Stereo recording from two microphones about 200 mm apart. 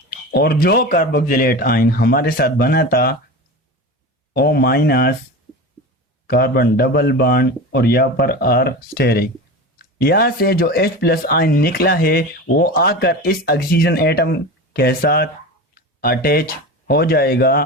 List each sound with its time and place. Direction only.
0.3 s speech: 50° left (ahead or behind)
4.4 s speech: 50° left (ahead or behind)
6.2 s speech: 50° left (ahead or behind)